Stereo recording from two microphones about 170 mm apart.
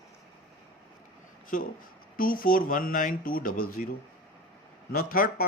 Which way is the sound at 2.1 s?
55° left (ahead or behind).